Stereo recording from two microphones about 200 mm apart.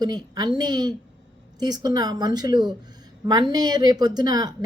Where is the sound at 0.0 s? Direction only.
20° right (ahead or behind).